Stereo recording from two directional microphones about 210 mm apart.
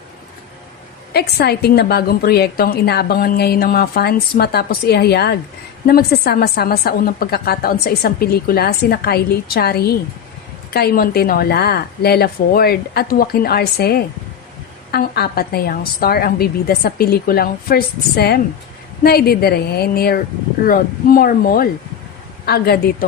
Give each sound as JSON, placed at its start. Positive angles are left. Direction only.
{"t": 1.1, "sound": "a woman's voice", "side_deg": 50}